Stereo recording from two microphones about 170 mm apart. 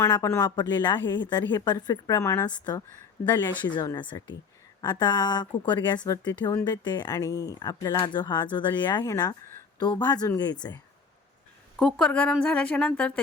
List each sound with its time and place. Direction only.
0.0 s speech: 20° left (ahead or behind)
11.8 s a woman's voice: 5° left (ahead or behind)